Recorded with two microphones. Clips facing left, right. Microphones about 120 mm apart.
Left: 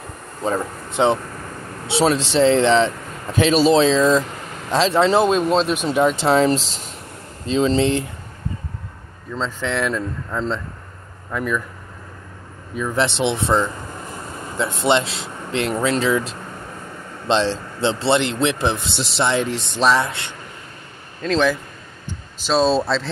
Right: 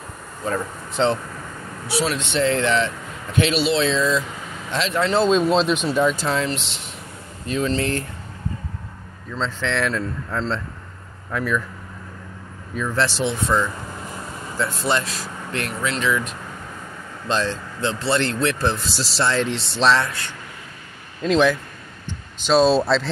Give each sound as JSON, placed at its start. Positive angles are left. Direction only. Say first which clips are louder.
{"t": 0.4, "sound": "speech", "louder": "left 3 dB", "side_deg": 20}
{"t": 1.9, "sound": "speech", "louder": "left 5 dB", "side_deg": 30}
{"t": 5.3, "sound": "speech", "louder": "even", "side_deg": 0}
{"t": 5.9, "sound": "speech", "louder": "left 3 dB", "side_deg": 25}
{"t": 7.4, "sound": "speech", "louder": "left 5 dB", "side_deg": 25}
{"t": 9.4, "sound": "speech", "louder": "left 1 dB", "side_deg": 5}
{"t": 12.7, "sound": "speech", "louder": "left 2 dB", "side_deg": 15}
{"t": 20.1, "sound": "speech", "louder": "left 1 dB", "side_deg": 25}
{"t": 21.2, "sound": "a man's voice", "louder": "right 1 dB", "side_deg": -10}
{"t": 22.5, "sound": "speech", "louder": "right 1 dB", "side_deg": 0}